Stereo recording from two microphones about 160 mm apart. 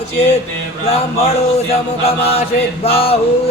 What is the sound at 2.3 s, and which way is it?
Mantra, 40° left (ahead or behind).